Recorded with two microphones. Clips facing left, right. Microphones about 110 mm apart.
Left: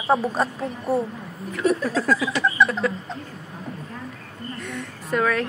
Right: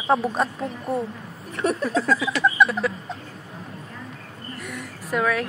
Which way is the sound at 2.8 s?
Centre (ahead or behind).